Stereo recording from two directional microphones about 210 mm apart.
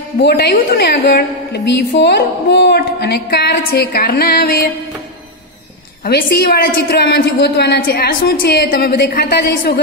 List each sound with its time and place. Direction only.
0.2 s a woman's voice: 50° left (ahead or behind)
6.0 s a woman's voice: 45° left (ahead or behind)